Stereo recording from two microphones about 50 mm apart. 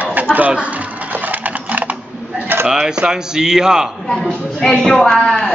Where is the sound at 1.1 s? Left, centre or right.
Right.